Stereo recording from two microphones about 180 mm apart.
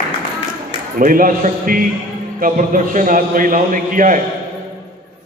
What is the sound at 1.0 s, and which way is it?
A man's voice, 50° right (ahead or behind).